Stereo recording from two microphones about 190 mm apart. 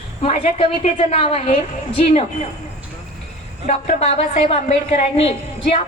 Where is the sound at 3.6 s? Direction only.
35° left (ahead or behind).